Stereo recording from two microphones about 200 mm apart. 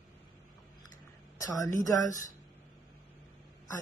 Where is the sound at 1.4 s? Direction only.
15° left (ahead or behind).